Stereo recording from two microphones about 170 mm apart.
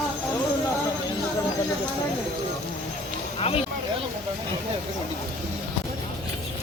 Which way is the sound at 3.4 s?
35° left (ahead or behind).